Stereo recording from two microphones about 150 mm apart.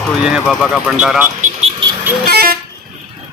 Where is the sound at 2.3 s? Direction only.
90° right.